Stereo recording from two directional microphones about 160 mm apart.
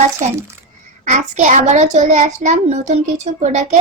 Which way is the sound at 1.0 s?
45° right (ahead or behind).